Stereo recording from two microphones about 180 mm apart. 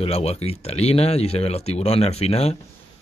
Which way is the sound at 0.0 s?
35° left (ahead or behind).